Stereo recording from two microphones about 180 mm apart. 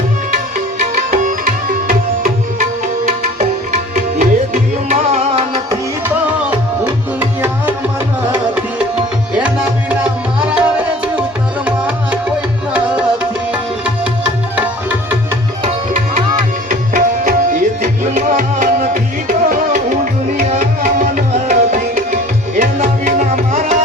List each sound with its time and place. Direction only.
0.9 s music: 45° right (ahead or behind)
3.9 s tabla: 45° right (ahead or behind)
9.3 s music: 5° right (ahead or behind)
13.5 s music: 5° right (ahead or behind)
16.6 s tabla: 45° right (ahead or behind)
18.2 s music: 45° right (ahead or behind)
20.4 s tabla: 45° right (ahead or behind)